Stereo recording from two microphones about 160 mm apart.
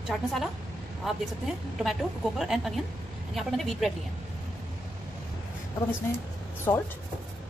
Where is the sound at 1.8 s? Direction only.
Centre (ahead or behind).